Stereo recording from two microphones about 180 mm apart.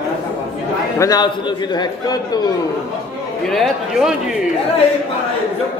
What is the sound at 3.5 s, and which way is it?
Speech, centre (ahead or behind).